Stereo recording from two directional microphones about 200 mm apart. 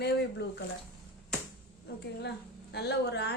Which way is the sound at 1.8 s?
55° left (ahead or behind).